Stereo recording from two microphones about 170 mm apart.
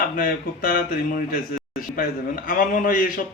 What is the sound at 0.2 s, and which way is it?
A man's voice, 55° left (ahead or behind).